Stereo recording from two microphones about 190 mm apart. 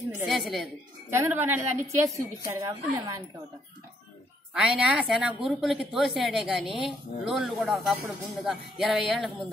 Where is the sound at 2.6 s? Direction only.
20° right (ahead or behind).